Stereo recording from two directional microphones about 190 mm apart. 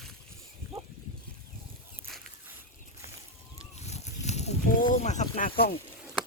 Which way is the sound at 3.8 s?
35° left (ahead or behind).